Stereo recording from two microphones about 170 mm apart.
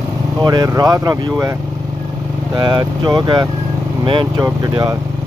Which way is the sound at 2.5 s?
25° right (ahead or behind).